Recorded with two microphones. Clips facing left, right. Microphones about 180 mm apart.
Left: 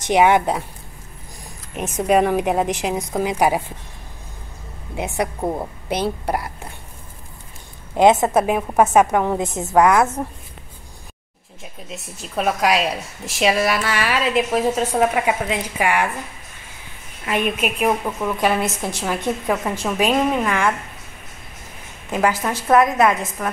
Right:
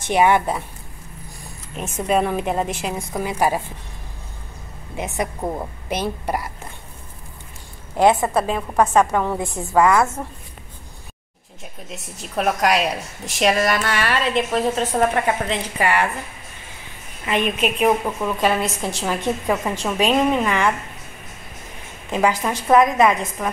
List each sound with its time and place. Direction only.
0.0 s a woman's voice: 15° left (ahead or behind)
1.8 s a woman's voice: 15° left (ahead or behind)
5.4 s a woman's voice: 10° left (ahead or behind)
7.9 s a woman's voice: 20° left (ahead or behind)
11.9 s a woman's voice: centre (ahead or behind)
17.3 s a woman's voice: 10° left (ahead or behind)
19.4 s a woman's voice: 5° right (ahead or behind)
22.7 s a woman's voice: centre (ahead or behind)